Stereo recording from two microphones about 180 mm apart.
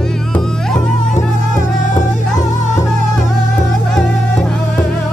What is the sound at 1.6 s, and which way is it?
Music, 40° left (ahead or behind).